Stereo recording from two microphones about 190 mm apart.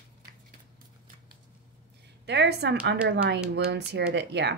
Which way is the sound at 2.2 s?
60° right (ahead or behind).